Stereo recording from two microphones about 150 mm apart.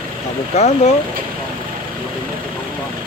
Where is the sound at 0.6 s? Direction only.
45° left (ahead or behind).